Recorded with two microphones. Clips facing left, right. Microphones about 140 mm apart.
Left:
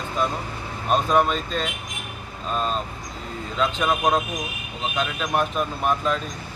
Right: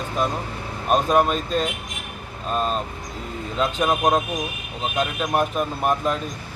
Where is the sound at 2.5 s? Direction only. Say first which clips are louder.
Right 2 dB; 5° right (ahead or behind).